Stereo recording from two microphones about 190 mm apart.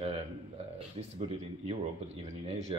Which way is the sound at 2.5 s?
35° right (ahead or behind).